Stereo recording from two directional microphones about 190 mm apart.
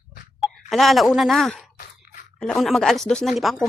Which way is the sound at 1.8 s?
45° left (ahead or behind).